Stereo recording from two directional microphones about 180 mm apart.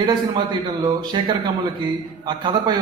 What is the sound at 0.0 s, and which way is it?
A man's voice, 20° right (ahead or behind).